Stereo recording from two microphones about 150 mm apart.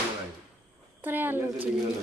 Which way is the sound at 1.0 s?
10° right (ahead or behind).